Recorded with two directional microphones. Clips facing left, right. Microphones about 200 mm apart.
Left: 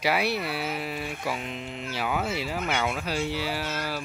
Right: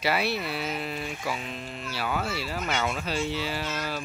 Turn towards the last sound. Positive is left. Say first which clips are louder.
# left 1 dB
turn(degrees=10)  # may be behind; listen again after turning